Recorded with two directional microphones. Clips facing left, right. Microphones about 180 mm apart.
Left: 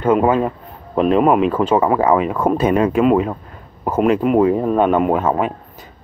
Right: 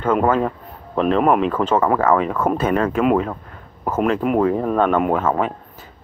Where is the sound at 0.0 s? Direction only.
10° left (ahead or behind).